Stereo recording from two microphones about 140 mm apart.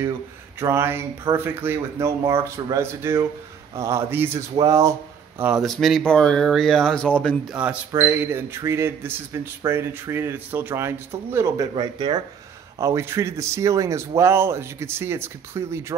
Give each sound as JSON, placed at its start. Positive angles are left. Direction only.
{"t": 0.6, "sound": "speech", "side_deg": -20}
{"t": 5.4, "sound": "speech", "side_deg": -5}
{"t": 7.5, "sound": "speech", "side_deg": -10}
{"t": 12.7, "sound": "speech", "side_deg": -20}